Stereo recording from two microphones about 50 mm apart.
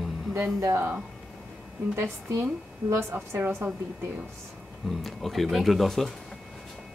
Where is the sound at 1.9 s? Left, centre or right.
Right.